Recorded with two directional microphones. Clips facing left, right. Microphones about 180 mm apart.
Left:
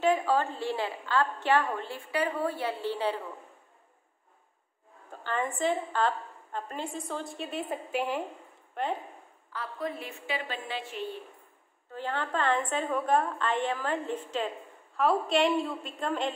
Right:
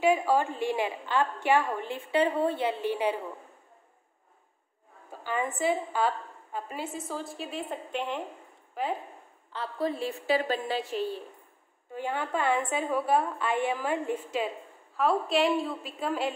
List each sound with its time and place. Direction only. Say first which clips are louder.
0.0 s a woman's voice: right 2 dB; 10° right (ahead or behind)
5.2 s a woman's voice: right 1 dB; 10° right (ahead or behind)
9.5 s a woman's voice: right 4 dB; 30° right (ahead or behind)
11.9 s a woman's voice: right 1 dB; 10° right (ahead or behind)